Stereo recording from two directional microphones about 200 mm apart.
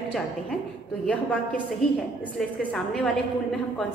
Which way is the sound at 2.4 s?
5° left (ahead or behind).